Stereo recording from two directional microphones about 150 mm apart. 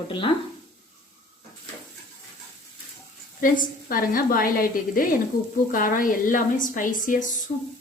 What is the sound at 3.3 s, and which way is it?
A woman's voice, 70° left (ahead or behind).